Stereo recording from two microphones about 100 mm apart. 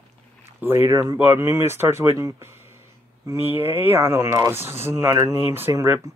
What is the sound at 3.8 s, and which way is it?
Speech, 25° right (ahead or behind).